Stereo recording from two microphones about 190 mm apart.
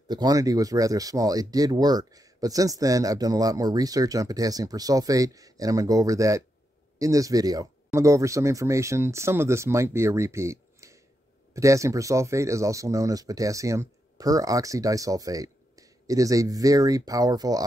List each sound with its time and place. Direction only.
0.1 s speech: 20° right (ahead or behind)